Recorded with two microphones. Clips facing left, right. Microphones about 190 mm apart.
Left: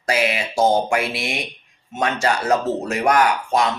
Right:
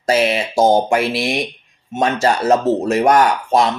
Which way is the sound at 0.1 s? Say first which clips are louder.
Right 5 dB; 30° right (ahead or behind).